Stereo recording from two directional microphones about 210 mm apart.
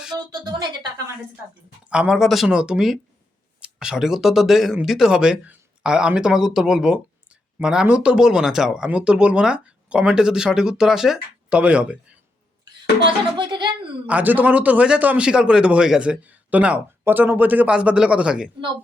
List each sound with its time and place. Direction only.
0.2 s speech: 20° right (ahead or behind)
1.9 s speech: 5° right (ahead or behind)
13.3 s music: 20° right (ahead or behind)
14.1 s speech: 5° right (ahead or behind)